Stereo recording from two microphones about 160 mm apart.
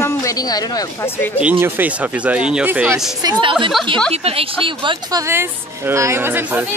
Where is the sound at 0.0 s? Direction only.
20° left (ahead or behind).